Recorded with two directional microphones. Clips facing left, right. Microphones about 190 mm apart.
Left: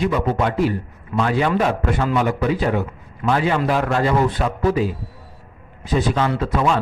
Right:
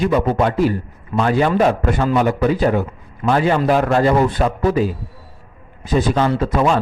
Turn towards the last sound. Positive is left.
turn(degrees=-40)  # may be behind; listen again after turning